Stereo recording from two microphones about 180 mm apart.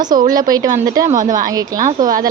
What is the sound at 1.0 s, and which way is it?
Speech, 45° right (ahead or behind).